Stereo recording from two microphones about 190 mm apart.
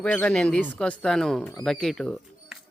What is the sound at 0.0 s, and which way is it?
Speech, 5° left (ahead or behind).